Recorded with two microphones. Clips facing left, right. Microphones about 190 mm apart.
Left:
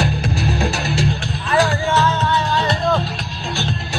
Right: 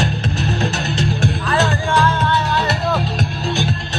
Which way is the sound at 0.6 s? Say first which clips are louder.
Even; 10° left (ahead or behind).